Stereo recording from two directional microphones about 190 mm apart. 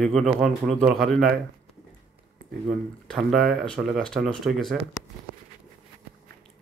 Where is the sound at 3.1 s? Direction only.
Centre (ahead or behind).